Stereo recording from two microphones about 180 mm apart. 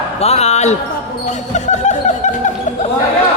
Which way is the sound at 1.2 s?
40° left (ahead or behind).